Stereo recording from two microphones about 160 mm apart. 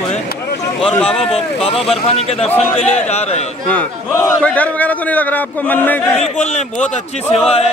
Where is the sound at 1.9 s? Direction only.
40° left (ahead or behind).